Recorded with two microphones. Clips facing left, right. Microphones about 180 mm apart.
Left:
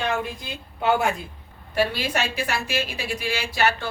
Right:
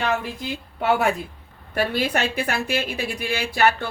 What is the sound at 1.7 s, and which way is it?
A woman's voice, 55° right (ahead or behind).